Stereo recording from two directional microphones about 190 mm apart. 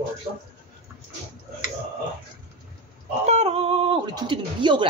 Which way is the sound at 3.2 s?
30° right (ahead or behind).